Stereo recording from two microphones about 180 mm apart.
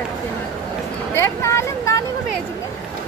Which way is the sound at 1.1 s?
15° left (ahead or behind).